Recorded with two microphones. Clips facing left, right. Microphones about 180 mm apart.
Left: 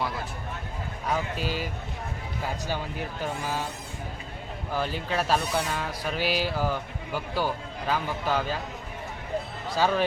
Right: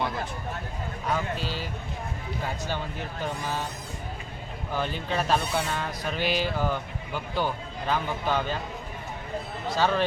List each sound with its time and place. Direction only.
1.4 s speech: 10° left (ahead or behind)
4.7 s speech: 5° left (ahead or behind)
9.7 s speech: 10° left (ahead or behind)